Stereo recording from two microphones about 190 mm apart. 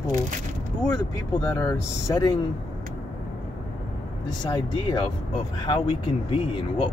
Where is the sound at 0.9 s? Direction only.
15° left (ahead or behind).